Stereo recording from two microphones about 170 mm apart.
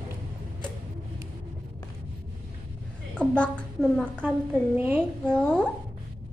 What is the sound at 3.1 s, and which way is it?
A woman's voice, 5° left (ahead or behind).